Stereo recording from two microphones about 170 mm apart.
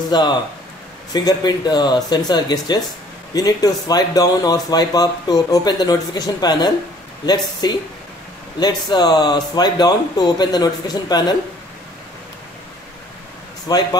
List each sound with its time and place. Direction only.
0.1 s speech: 25° left (ahead or behind)
13.7 s speech: 25° left (ahead or behind)